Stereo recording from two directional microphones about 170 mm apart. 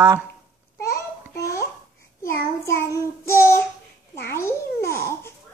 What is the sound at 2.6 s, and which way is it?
Child singing, 15° left (ahead or behind).